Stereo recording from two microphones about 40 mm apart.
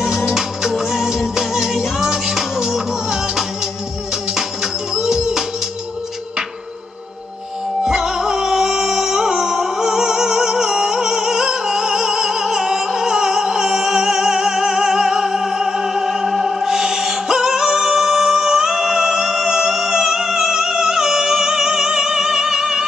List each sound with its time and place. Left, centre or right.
0.0 s music: centre
7.8 s music: centre